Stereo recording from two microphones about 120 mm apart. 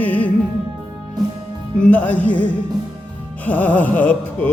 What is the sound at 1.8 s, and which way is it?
Music, 15° left (ahead or behind).